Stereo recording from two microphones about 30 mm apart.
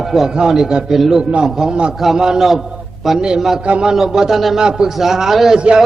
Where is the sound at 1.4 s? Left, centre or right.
Right.